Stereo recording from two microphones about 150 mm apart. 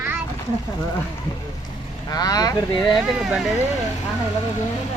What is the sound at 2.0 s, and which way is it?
Speech, 25° left (ahead or behind).